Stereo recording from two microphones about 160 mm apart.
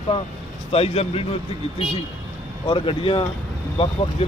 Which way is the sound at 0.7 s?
40° left (ahead or behind).